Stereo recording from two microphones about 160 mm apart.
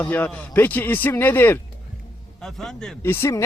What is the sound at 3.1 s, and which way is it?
Speech, 15° left (ahead or behind).